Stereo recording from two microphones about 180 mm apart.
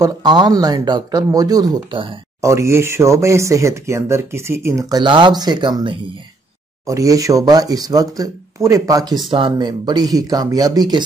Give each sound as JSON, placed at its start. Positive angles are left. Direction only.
{"t": 0.0, "sound": "speech", "side_deg": -25}
{"t": 2.4, "sound": "speech", "side_deg": -15}